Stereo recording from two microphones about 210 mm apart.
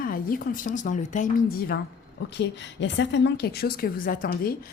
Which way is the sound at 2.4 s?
55° left (ahead or behind).